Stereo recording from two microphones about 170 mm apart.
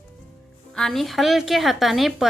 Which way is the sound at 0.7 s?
5° left (ahead or behind).